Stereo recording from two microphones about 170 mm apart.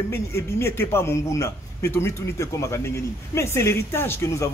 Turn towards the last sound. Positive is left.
turn(degrees=15)  # may be behind; listen again after turning